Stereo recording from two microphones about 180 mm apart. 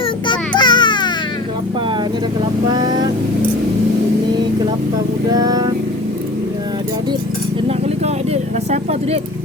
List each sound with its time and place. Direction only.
0.3 s baby cry: 25° left (ahead or behind)
2.4 s vehicle: 25° right (ahead or behind)
5.3 s music: 20° right (ahead or behind)
7.9 s vehicle: 35° right (ahead or behind)